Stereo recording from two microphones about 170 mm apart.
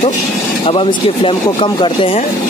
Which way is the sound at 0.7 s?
30° left (ahead or behind).